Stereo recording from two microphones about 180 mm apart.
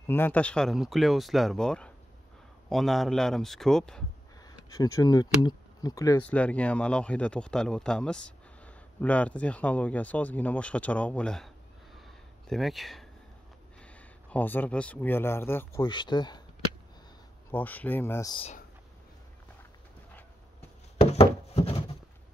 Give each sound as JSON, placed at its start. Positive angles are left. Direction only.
{"t": 0.0, "sound": "speech", "side_deg": 10}
{"t": 4.6, "sound": "speech", "side_deg": 20}
{"t": 6.2, "sound": "speech", "side_deg": 5}
{"t": 17.5, "sound": "speech", "side_deg": 10}
{"t": 21.0, "sound": "a sound", "side_deg": 35}